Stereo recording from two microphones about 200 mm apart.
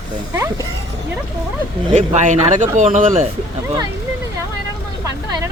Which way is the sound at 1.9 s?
35° right (ahead or behind).